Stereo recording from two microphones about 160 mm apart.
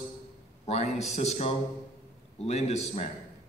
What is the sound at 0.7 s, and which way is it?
A man's voice, 45° left (ahead or behind).